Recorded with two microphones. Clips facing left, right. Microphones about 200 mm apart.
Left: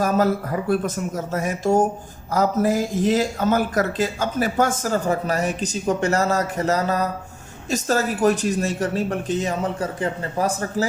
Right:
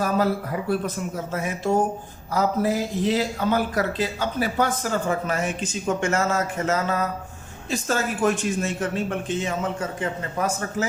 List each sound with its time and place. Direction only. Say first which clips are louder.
0.0 s a man's voice: left 3 dB; 45° left (ahead or behind)